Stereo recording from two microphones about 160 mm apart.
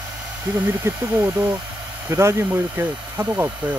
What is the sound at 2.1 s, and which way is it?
Speech, 15° right (ahead or behind).